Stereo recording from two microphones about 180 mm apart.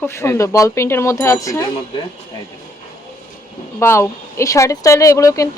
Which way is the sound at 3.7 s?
15° left (ahead or behind).